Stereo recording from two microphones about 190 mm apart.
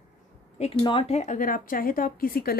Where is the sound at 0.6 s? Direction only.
25° left (ahead or behind); by 2.5 s 50° left (ahead or behind).